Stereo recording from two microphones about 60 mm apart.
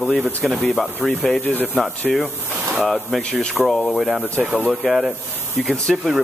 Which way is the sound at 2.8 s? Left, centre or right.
Centre.